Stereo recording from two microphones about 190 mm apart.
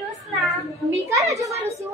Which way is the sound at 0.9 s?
15° right (ahead or behind).